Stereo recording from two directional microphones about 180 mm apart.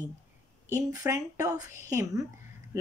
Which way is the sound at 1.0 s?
20° right (ahead or behind).